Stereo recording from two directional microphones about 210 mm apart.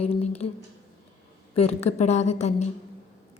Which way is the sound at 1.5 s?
30° left (ahead or behind).